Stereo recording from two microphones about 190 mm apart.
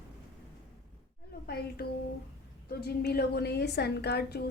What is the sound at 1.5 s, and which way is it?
A woman's voice, 55° left (ahead or behind).